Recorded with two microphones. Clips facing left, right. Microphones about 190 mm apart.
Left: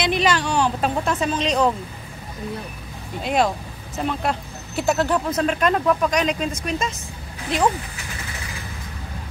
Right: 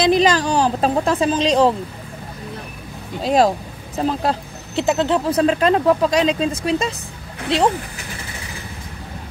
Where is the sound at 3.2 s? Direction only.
35° right (ahead or behind).